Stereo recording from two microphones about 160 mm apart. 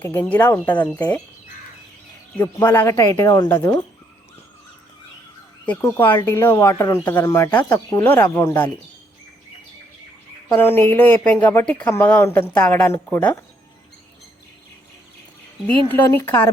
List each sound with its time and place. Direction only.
0.0 s speech: 10° left (ahead or behind)
2.4 s speech: 10° left (ahead or behind)
5.6 s speech: 10° left (ahead or behind)
10.6 s speech: 15° left (ahead or behind)
15.9 s speech: 10° left (ahead or behind)